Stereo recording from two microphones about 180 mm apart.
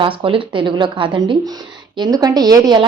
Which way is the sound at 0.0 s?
30° right (ahead or behind).